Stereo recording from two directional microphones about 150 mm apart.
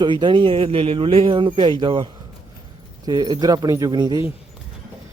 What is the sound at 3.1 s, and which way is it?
Speech, 25° right (ahead or behind).